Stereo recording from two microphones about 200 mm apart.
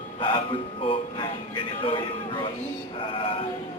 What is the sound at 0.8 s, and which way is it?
Speech, 25° left (ahead or behind).